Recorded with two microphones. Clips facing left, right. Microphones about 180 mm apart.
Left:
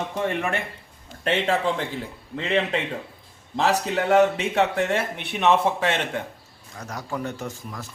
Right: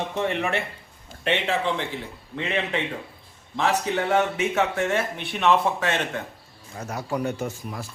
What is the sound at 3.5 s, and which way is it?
Speech, 35° left (ahead or behind).